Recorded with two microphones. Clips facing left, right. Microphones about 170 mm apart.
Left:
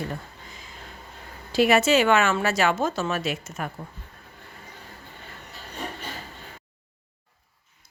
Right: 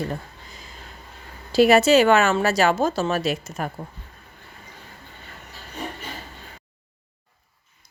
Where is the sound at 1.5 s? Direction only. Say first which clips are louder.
Right 4 dB; 35° right (ahead or behind).